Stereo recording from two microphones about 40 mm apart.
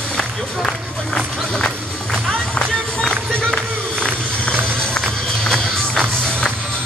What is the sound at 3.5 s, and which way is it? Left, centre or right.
Run, left.